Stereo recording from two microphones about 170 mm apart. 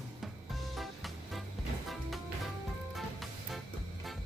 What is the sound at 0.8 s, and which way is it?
Music, centre (ahead or behind).